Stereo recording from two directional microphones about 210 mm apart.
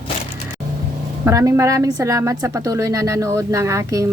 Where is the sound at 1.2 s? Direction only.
15° right (ahead or behind).